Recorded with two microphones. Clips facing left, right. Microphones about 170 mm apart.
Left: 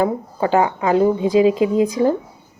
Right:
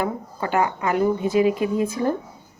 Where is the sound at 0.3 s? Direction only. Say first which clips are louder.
Left 5 dB; 20° left (ahead or behind).